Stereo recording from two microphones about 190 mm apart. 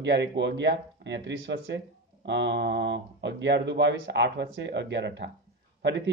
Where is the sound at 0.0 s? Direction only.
70° right (ahead or behind).